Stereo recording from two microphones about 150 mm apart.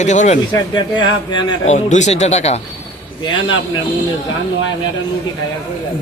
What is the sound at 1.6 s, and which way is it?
Speech, 50° left (ahead or behind).